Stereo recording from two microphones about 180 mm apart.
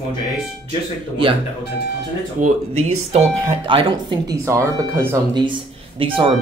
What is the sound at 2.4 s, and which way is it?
Speech, 40° right (ahead or behind).